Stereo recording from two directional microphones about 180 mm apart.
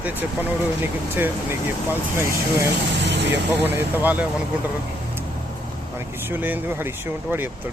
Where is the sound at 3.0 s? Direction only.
80° right.